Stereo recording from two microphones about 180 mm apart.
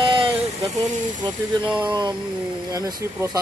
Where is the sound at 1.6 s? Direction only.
5° right (ahead or behind).